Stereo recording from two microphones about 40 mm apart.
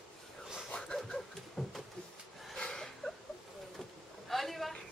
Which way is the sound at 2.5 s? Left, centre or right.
Centre.